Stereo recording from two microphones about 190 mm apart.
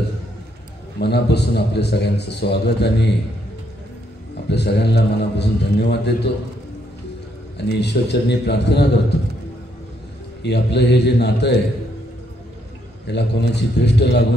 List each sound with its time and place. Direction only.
0.9 s a man's voice: 60° left (ahead or behind)
4.5 s a man's voice: 60° left (ahead or behind)
7.5 s a man's voice: 60° left (ahead or behind)
10.4 s a man's voice: 60° left (ahead or behind)
13.0 s a man's voice: 60° left (ahead or behind)